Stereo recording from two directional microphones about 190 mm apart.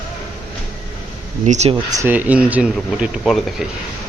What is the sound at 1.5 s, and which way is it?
Speech, 35° right (ahead or behind).